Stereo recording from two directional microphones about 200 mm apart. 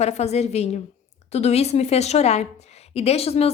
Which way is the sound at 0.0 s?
35° left (ahead or behind).